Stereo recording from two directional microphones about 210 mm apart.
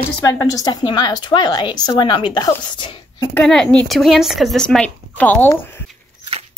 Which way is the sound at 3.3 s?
5° left (ahead or behind).